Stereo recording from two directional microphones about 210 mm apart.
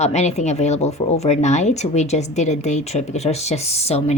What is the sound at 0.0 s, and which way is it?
Speech, 30° left (ahead or behind).